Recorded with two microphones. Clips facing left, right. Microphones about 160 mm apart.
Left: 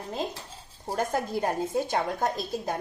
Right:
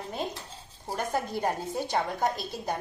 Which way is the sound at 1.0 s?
45° left (ahead or behind).